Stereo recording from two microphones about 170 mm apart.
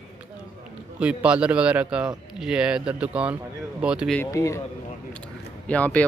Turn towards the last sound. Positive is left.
turn(degrees=10)  # may be behind; listen again after turning